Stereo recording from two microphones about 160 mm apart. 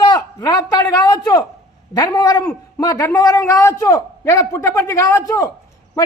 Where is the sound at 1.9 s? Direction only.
25° left (ahead or behind).